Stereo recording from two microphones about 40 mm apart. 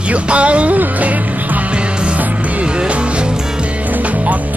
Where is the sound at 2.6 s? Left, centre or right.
Right.